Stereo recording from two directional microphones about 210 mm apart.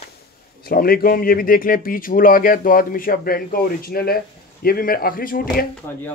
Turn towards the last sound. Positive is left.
turn(degrees=45)  # may be behind; listen again after turning